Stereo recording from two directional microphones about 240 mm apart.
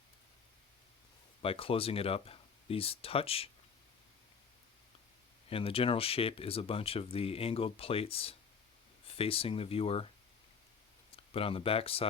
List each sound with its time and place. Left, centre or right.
1.4 s speech: left
5.5 s speech: left
11.1 s speech: left